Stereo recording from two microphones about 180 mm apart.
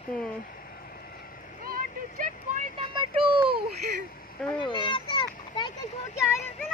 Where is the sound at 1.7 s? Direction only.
45° right (ahead or behind).